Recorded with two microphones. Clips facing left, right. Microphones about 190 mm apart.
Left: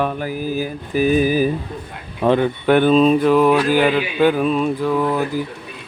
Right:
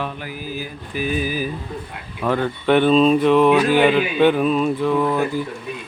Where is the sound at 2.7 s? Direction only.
5° left (ahead or behind).